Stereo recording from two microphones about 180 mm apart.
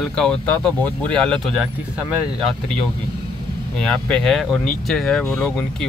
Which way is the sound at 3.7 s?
5° left (ahead or behind).